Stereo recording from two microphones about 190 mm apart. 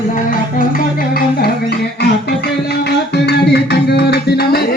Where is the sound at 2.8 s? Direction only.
60° left (ahead or behind).